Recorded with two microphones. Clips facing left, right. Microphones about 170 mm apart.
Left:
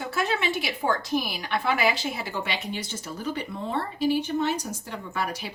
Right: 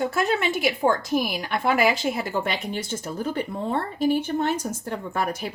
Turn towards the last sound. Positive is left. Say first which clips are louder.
# right 4 dB
turn(degrees=-50)  # may be behind; listen again after turning